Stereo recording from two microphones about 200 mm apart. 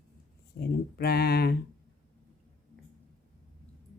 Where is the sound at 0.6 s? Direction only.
50° left (ahead or behind).